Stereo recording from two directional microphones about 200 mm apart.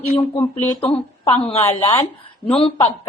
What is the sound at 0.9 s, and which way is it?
A woman's voice, 25° left (ahead or behind).